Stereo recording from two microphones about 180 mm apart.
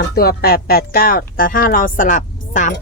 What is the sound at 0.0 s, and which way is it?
Speech, 60° left (ahead or behind).